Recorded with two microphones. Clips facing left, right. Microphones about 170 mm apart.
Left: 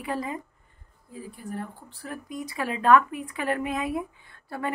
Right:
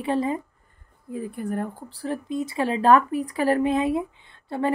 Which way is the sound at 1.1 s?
60° right (ahead or behind).